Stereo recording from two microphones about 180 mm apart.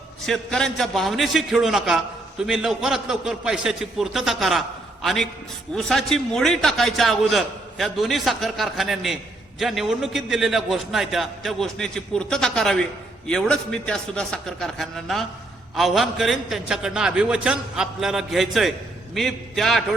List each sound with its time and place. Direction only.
0.3 s a man's voice: centre (ahead or behind)